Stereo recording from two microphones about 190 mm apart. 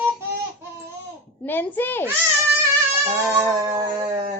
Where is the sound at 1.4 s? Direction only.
10° left (ahead or behind).